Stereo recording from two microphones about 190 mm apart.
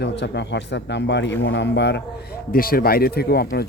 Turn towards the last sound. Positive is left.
turn(degrees=55)  # may be behind; listen again after turning